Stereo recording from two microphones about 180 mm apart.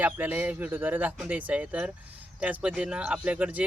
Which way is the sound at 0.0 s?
10° right (ahead or behind).